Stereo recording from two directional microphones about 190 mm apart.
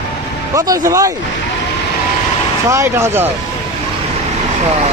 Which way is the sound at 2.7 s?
15° right (ahead or behind).